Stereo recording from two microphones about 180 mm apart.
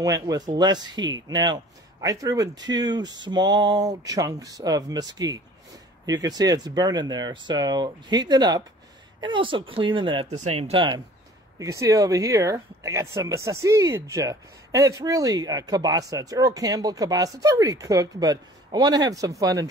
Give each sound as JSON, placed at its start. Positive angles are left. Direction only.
{"t": 0.0, "sound": "speech", "side_deg": -20}
{"t": 10.3, "sound": "speech", "side_deg": -35}
{"t": 11.5, "sound": "speech", "side_deg": -20}